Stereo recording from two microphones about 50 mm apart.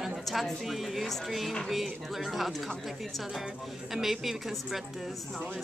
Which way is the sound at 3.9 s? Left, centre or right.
Centre.